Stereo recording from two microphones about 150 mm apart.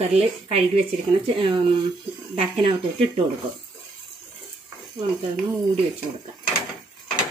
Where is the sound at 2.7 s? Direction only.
40° right (ahead or behind).